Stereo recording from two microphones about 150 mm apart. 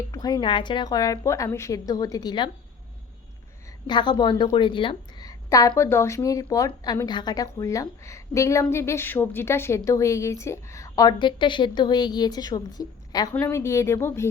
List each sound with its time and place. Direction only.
0.1 s a woman's voice: 25° left (ahead or behind)
3.8 s a woman's voice: 30° left (ahead or behind)